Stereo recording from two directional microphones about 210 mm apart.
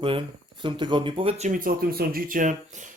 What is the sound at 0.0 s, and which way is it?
Speech, 25° right (ahead or behind).